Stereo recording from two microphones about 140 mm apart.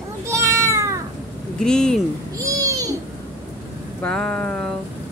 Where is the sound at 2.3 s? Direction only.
25° right (ahead or behind).